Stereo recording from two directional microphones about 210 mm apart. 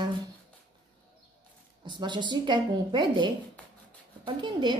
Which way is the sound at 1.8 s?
20° right (ahead or behind).